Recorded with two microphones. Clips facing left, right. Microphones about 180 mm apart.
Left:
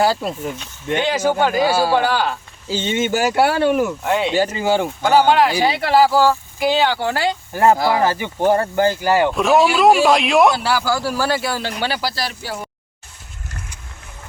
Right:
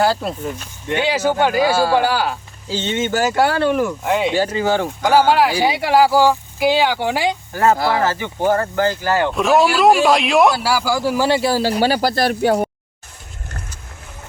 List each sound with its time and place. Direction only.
0.0 s speech: centre (ahead or behind)
2.0 s speech: 5° right (ahead or behind)
2.6 s speech: 10° left (ahead or behind)
4.5 s speech: 10° left (ahead or behind)
5.0 s speech: 5° right (ahead or behind)
7.5 s speech: 15° left (ahead or behind)
9.3 s speech: centre (ahead or behind); by 12.7 s 60° right (ahead or behind)